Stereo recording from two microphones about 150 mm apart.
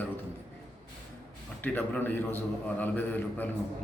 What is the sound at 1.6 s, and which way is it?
Speech, 10° left (ahead or behind).